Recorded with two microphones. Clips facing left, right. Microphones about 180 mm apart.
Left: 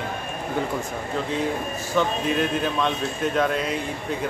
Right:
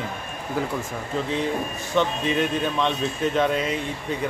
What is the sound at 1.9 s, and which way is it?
Speech, centre (ahead or behind).